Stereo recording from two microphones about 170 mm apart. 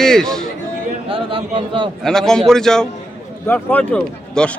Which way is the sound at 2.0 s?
5° left (ahead or behind).